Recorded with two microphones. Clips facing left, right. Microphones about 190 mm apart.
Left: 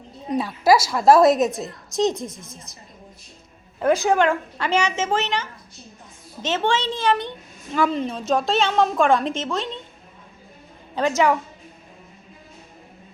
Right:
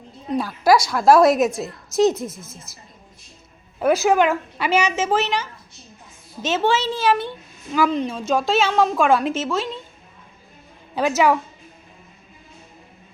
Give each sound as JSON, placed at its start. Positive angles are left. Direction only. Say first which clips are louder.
{"t": 0.3, "sound": "a woman's voice", "louder": "right 1 dB", "side_deg": 0}
{"t": 3.8, "sound": "a woman's voice", "louder": "right 1 dB", "side_deg": -5}
{"t": 10.9, "sound": "a woman's voice", "louder": "right 1 dB", "side_deg": -10}